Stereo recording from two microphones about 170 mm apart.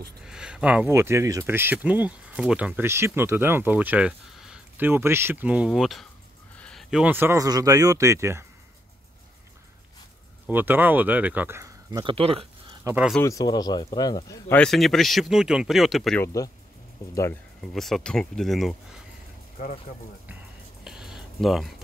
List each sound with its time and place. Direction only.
0.2 s speech: 5° right (ahead or behind)
10.5 s speech: 10° right (ahead or behind); by 12.4 s 35° right (ahead or behind)
12.8 s speech: 10° right (ahead or behind)
13.2 s speech: 20° left (ahead or behind)
14.5 s speech: 5° left (ahead or behind)
16.2 s speech: 15° left (ahead or behind)
17.6 s speech: centre (ahead or behind)
19.6 s speech: 50° left (ahead or behind)
20.8 s a sound: 5° right (ahead or behind)